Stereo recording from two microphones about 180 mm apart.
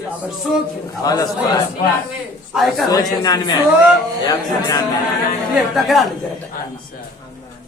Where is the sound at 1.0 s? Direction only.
20° left (ahead or behind).